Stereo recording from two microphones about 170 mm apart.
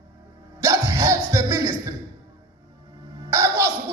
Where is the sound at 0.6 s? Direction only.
15° right (ahead or behind).